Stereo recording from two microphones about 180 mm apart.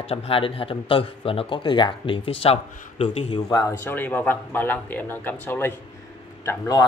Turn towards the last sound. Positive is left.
turn(degrees=20)  # may be behind; listen again after turning